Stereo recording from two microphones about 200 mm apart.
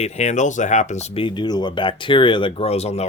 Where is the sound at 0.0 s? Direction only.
35° left (ahead or behind).